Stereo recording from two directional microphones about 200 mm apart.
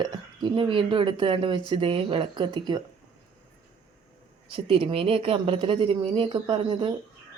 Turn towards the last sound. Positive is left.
turn(degrees=-25)  # may be behind; listen again after turning